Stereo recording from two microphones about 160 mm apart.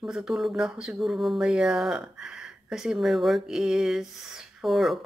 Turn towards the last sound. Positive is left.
turn(degrees=0)  # may be behind; listen again after turning